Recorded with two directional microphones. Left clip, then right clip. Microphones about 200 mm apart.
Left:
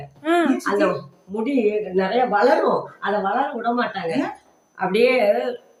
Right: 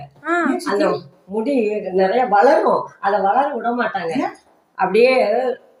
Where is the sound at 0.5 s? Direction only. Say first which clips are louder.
Right 1 dB; 10° left (ahead or behind).